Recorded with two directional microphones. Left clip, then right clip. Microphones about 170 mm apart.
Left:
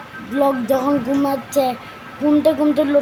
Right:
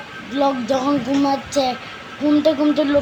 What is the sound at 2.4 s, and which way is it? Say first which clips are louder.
Speech: left 1 dB; 15° left (ahead or behind).